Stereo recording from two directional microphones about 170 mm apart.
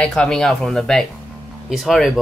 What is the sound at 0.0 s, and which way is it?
Speech, 5° left (ahead or behind).